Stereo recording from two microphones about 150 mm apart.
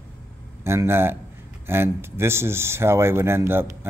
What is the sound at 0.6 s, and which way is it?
Speech, 15° right (ahead or behind).